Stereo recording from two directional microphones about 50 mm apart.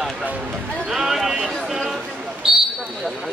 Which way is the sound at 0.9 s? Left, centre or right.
Centre.